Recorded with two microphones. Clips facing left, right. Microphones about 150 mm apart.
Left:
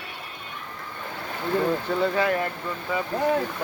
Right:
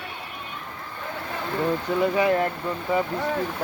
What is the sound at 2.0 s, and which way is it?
Speech, 20° right (ahead or behind).